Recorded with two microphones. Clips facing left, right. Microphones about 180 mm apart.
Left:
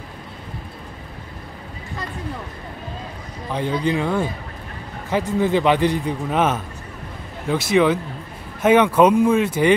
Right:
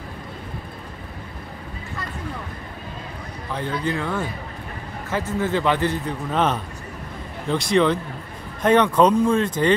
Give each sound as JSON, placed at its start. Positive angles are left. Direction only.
{"t": 3.5, "sound": "a man's voice", "side_deg": 15}